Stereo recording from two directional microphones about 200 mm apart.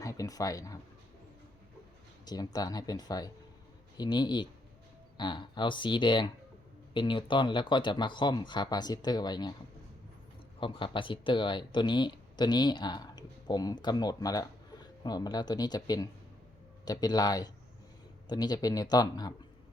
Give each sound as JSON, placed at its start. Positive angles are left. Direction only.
{"t": 0.0, "sound": "speech", "side_deg": 15}
{"t": 2.2, "sound": "speech", "side_deg": 20}
{"t": 10.6, "sound": "speech", "side_deg": 25}